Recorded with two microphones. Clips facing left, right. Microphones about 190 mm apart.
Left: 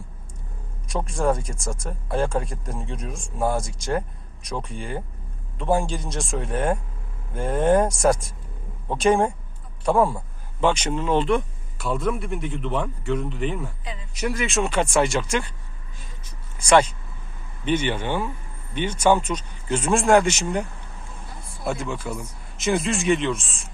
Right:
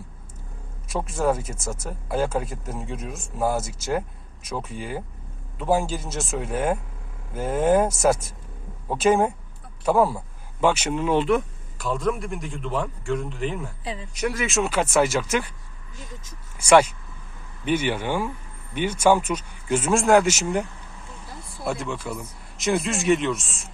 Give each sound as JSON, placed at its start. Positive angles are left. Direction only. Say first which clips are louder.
{"t": 0.9, "sound": "speech", "louder": "even", "side_deg": -5}
{"t": 13.8, "sound": "speech", "louder": "right 4 dB", "side_deg": -35}
{"t": 14.1, "sound": "speech", "louder": "left 1 dB", "side_deg": 0}
{"t": 16.6, "sound": "speech", "louder": "right 1 dB", "side_deg": -10}